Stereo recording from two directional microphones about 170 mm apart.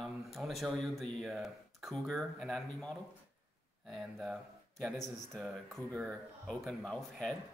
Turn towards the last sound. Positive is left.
turn(degrees=5)  # may be behind; listen again after turning